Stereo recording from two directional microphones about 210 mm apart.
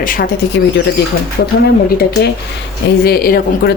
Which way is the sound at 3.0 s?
45° left (ahead or behind).